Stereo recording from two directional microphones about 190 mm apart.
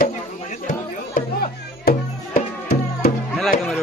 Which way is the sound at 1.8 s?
50° left (ahead or behind).